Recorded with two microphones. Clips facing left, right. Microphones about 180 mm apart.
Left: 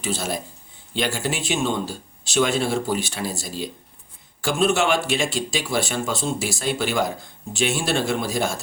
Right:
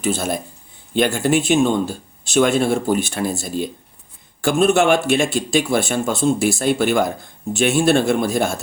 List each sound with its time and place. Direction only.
0.0 s speech: 55° right (ahead or behind)